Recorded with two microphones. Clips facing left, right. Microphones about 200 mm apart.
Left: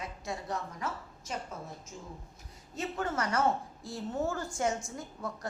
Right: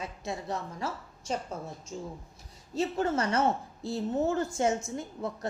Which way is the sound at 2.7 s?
25° right (ahead or behind).